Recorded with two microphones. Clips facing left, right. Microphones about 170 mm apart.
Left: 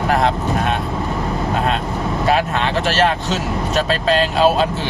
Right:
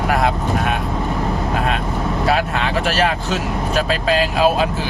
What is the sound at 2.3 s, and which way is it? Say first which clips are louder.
Speech: left 2 dB; 5° right (ahead or behind).